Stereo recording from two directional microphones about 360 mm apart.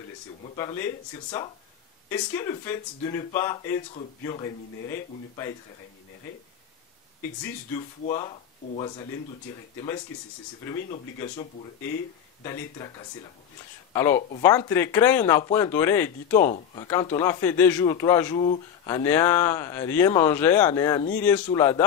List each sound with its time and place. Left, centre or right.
0.6 s speech: centre
7.4 s speech: centre
11.1 s speech: centre
13.9 s speech: centre
16.3 s speech: left
16.8 s speech: centre